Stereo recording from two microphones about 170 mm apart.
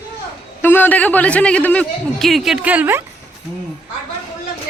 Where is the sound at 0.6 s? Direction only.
10° left (ahead or behind); by 3.0 s 10° right (ahead or behind).